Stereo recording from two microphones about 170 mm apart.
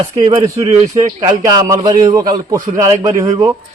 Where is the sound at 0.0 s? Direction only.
20° right (ahead or behind).